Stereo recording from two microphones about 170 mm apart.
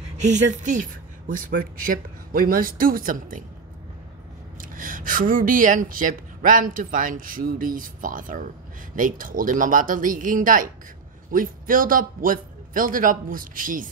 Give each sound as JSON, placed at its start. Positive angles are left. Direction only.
{"t": 0.2, "sound": "a man's voice", "side_deg": -45}
{"t": 4.6, "sound": "a woman's voice", "side_deg": -55}